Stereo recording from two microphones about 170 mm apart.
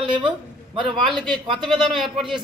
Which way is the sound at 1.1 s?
Centre (ahead or behind).